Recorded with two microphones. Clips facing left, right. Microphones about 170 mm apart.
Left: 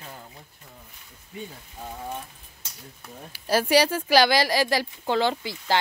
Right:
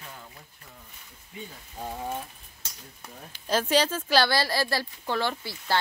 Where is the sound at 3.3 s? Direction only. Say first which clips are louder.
Left 4 dB; 10° left (ahead or behind).